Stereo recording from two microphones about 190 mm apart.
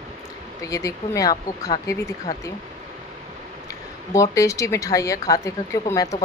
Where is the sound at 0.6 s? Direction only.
20° left (ahead or behind).